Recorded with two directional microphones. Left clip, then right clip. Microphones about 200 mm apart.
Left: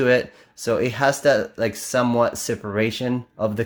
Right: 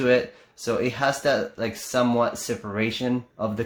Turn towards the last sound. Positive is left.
turn(degrees=40)  # may be behind; listen again after turning